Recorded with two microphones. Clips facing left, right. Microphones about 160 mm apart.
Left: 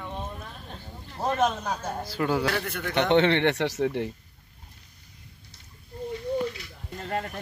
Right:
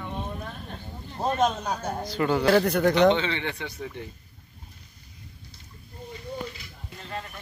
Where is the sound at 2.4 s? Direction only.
40° right (ahead or behind).